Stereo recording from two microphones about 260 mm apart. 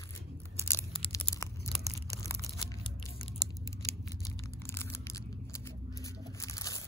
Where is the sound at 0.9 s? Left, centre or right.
Left.